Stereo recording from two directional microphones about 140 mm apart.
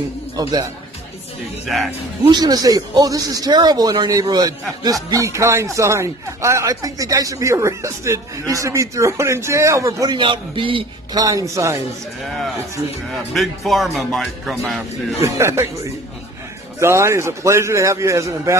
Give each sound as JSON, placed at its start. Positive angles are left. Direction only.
{"t": 0.4, "sound": "speech", "side_deg": -30}
{"t": 1.7, "sound": "speech", "side_deg": 0}
{"t": 2.2, "sound": "speech", "side_deg": -30}
{"t": 11.1, "sound": "speech", "side_deg": -25}
{"t": 13.1, "sound": "speech", "side_deg": 0}
{"t": 15.2, "sound": "speech", "side_deg": -20}
{"t": 16.8, "sound": "speech", "side_deg": -20}